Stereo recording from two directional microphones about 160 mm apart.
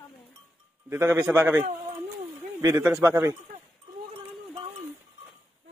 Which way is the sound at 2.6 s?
20° right (ahead or behind).